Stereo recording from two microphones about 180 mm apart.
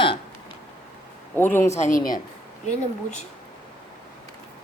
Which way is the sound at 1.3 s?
10° left (ahead or behind).